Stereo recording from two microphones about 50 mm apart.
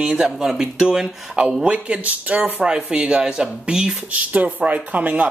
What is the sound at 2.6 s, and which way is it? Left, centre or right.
Speech, centre.